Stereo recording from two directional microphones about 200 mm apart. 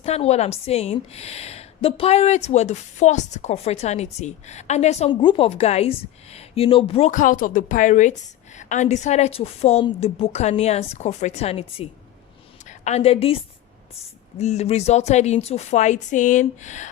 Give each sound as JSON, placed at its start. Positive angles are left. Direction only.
{"t": 0.0, "sound": "a woman's voice", "side_deg": 30}